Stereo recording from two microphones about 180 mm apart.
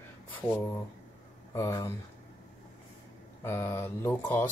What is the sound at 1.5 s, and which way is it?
Speech, 15° left (ahead or behind).